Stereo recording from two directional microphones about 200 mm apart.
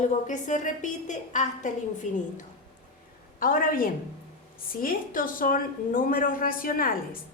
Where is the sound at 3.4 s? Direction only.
45° left (ahead or behind).